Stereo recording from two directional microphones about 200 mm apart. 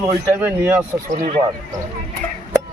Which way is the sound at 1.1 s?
40° right (ahead or behind).